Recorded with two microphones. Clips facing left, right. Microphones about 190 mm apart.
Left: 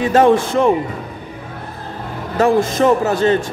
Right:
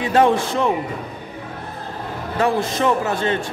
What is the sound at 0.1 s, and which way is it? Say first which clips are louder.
Speech: left 3 dB; 45° left (ahead or behind).